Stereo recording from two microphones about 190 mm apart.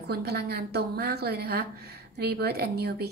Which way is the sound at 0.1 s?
55° right (ahead or behind).